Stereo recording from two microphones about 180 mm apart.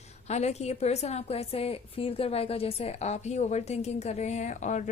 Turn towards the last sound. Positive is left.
turn(degrees=40)  # may be behind; listen again after turning